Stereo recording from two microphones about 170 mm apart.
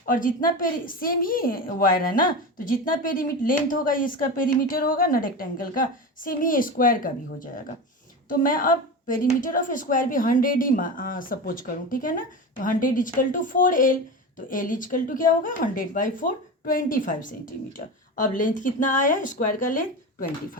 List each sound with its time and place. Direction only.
0.1 s a woman's voice: 55° left (ahead or behind)